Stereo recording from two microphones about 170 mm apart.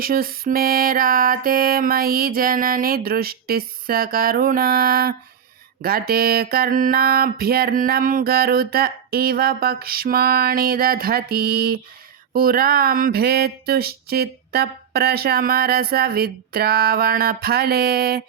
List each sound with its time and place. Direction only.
0.0 s mantra: 60° right (ahead or behind)